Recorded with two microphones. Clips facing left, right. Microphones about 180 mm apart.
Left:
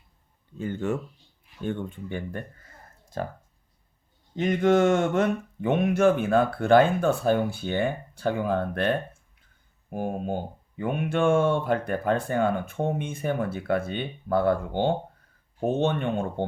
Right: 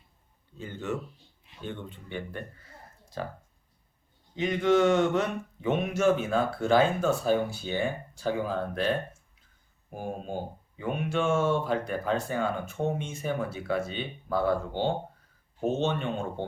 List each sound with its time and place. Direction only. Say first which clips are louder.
0.6 s speech: left 5 dB; 50° left (ahead or behind)
4.4 s speech: left 3 dB; 50° left (ahead or behind)
9.9 s speech: left 5 dB; 55° left (ahead or behind)